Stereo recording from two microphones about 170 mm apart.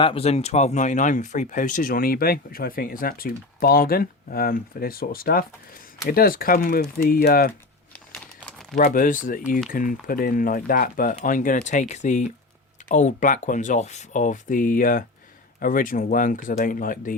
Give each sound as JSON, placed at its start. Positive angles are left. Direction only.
{"t": 0.0, "sound": "speech", "side_deg": 35}
{"t": 7.9, "sound": "crumpling", "side_deg": 10}
{"t": 8.7, "sound": "speech", "side_deg": 50}